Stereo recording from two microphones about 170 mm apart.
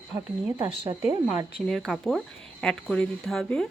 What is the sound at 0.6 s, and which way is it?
Speech, 30° right (ahead or behind).